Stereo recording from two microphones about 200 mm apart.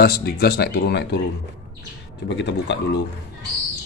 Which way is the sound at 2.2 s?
65° left (ahead or behind).